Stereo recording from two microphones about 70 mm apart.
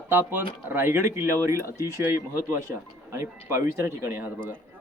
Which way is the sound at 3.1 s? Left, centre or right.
Right.